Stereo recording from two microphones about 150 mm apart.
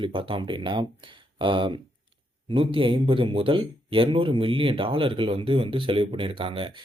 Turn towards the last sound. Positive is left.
turn(degrees=-35)  # may be behind; listen again after turning